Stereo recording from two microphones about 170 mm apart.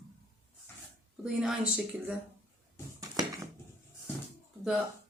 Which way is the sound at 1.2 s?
5° right (ahead or behind).